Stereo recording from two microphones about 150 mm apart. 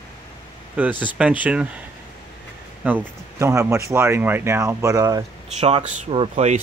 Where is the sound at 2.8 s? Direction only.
10° right (ahead or behind).